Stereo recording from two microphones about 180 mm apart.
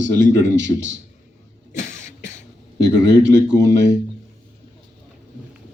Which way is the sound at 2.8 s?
80° right.